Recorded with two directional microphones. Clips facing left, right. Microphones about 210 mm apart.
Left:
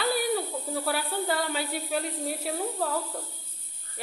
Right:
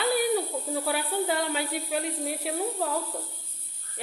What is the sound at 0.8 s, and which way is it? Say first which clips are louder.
Speech: right 1 dB; 10° right (ahead or behind).